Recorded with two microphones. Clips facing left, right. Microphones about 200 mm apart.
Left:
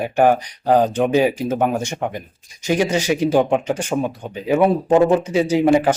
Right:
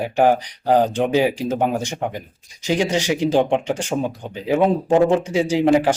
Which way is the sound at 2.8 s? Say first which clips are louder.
Left 2 dB; 15° right (ahead or behind).